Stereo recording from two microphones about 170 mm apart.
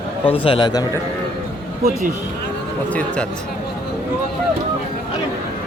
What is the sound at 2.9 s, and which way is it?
Speech, 5° left (ahead or behind).